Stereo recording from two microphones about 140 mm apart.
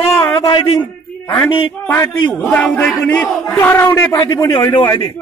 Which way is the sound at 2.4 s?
10° left (ahead or behind).